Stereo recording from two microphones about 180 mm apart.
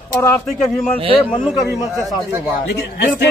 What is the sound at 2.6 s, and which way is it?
Speech, 70° left (ahead or behind).